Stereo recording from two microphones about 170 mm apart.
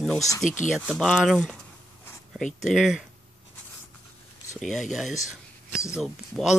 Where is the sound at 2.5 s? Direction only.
45° left (ahead or behind).